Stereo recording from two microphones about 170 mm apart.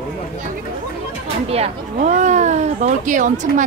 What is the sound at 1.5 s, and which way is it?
Speech, 40° right (ahead or behind).